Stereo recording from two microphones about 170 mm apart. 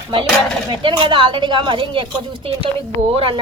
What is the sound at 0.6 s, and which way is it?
A woman's voice, 30° right (ahead or behind).